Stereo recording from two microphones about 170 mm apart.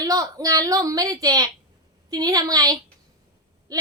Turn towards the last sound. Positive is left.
turn(degrees=-20)  # may be behind; listen again after turning